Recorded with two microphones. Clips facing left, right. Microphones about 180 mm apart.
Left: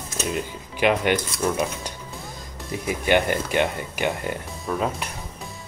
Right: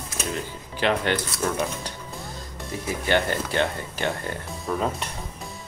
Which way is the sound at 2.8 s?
15° left (ahead or behind).